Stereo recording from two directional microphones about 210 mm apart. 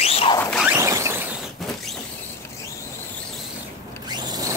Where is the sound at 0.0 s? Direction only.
30° left (ahead or behind).